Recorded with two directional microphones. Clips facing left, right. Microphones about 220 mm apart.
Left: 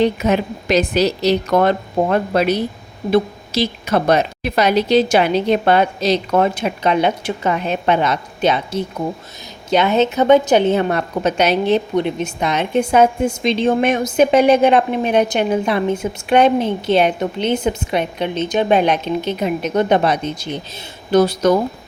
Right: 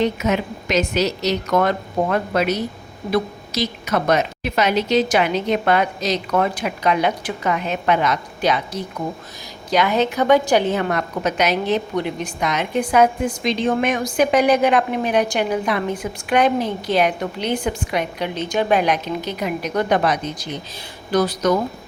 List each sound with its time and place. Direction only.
0.0 s a woman's voice: 30° left (ahead or behind)